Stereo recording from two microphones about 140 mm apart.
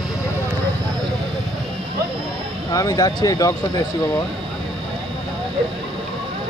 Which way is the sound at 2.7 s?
25° left (ahead or behind).